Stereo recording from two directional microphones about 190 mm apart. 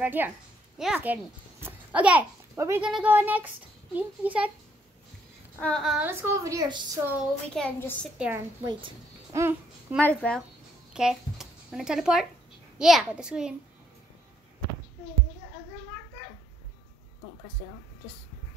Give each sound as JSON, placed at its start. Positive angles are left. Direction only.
{"t": 0.0, "sound": "child singing", "side_deg": -10}
{"t": 0.7, "sound": "a child's voice", "side_deg": -5}
{"t": 2.9, "sound": "child singing", "side_deg": -10}
{"t": 5.6, "sound": "a child's voice", "side_deg": 5}
{"t": 6.0, "sound": "child singing", "side_deg": -15}
{"t": 7.4, "sound": "a child's voice", "side_deg": 5}
{"t": 9.3, "sound": "speech", "side_deg": -10}
{"t": 9.9, "sound": "speech", "side_deg": 5}
{"t": 10.9, "sound": "a child's voice", "side_deg": -5}